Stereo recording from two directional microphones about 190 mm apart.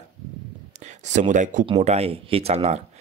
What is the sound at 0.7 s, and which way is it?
Speech, 40° right (ahead or behind).